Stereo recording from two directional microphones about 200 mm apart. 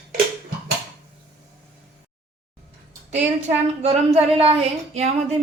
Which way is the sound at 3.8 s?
30° right (ahead or behind).